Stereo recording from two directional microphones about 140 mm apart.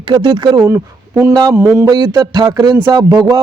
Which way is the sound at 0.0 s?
35° right (ahead or behind).